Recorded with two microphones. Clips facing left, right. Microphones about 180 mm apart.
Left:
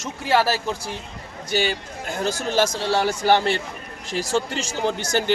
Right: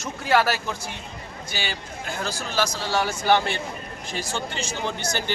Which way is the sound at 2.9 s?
30° left (ahead or behind).